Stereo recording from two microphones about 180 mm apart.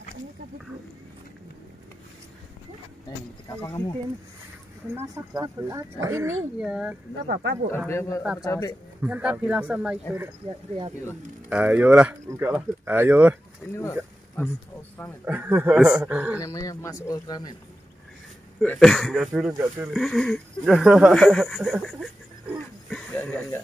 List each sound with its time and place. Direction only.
3.6 s speech: 15° left (ahead or behind)
4.9 s speech: 20° right (ahead or behind)
7.7 s speech: 10° left (ahead or behind)
8.2 s speech: 5° right (ahead or behind)
8.5 s speech: 15° left (ahead or behind)
9.0 s speech: 5° right (ahead or behind)
11.4 s speech: 10° right (ahead or behind)
13.7 s speech: 10° left (ahead or behind)
15.2 s speech: 10° right (ahead or behind)
16.3 s speech: 20° left (ahead or behind)
18.6 s speech: 5° left (ahead or behind)
19.5 s speech: 15° right (ahead or behind)
19.9 s speech: centre (ahead or behind)